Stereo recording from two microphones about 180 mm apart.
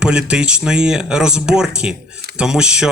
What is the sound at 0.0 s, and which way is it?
Speech, 5° right (ahead or behind).